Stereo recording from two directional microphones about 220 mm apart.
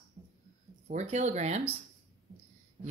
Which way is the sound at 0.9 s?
30° right (ahead or behind).